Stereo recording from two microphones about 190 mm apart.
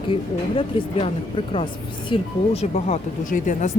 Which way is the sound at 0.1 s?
30° left (ahead or behind).